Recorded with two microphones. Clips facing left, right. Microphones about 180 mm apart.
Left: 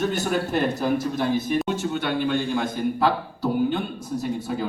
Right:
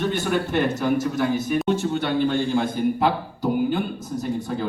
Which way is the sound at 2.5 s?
20° right (ahead or behind).